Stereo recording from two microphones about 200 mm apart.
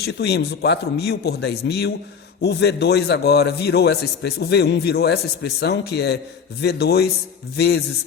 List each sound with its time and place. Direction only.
0.0 s a man's voice: 55° left (ahead or behind)